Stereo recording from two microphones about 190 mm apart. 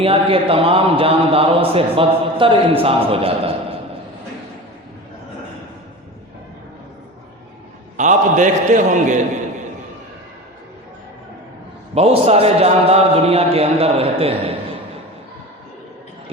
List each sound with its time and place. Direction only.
0.0 s a man's voice: 30° right (ahead or behind)
7.9 s a man's voice: 40° right (ahead or behind)
11.9 s a man's voice: 30° right (ahead or behind)